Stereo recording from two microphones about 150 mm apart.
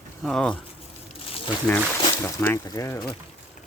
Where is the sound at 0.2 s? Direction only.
5° left (ahead or behind).